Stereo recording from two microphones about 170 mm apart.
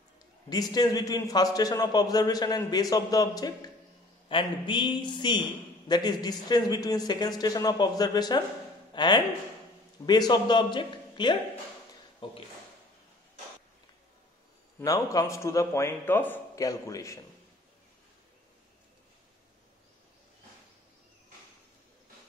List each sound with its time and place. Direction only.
0.5 s a man's voice: 25° left (ahead or behind)
14.8 s a man's voice: 20° left (ahead or behind)